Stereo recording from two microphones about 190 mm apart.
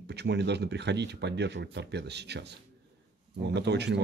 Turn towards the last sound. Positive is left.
turn(degrees=-65)  # may be behind; listen again after turning